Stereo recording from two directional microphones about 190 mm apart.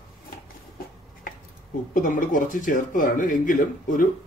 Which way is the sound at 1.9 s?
45° left (ahead or behind).